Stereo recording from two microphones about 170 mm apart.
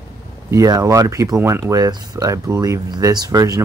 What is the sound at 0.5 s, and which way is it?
Speech, 20° right (ahead or behind).